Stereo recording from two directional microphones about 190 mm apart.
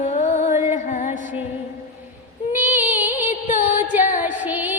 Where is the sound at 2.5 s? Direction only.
10° right (ahead or behind).